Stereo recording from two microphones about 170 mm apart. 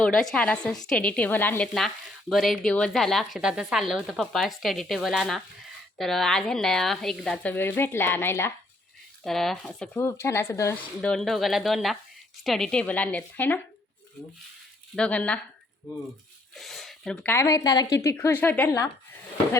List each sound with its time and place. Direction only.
0.0 s a woman's voice: centre (ahead or behind)
9.2 s speech: centre (ahead or behind)
9.9 s a woman's voice: 15° left (ahead or behind)
11.0 s a woman's voice: 5° left (ahead or behind)
14.9 s a woman's voice: 5° left (ahead or behind)
16.6 s speech: centre (ahead or behind)
17.3 s a woman's voice: 20° left (ahead or behind)